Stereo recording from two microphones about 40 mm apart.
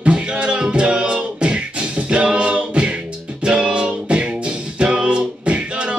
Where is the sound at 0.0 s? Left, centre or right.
Right.